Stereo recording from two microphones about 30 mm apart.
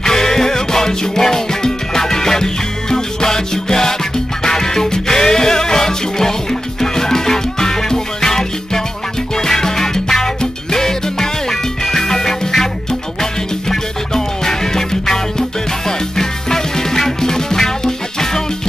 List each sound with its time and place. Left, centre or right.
0.0 s music: centre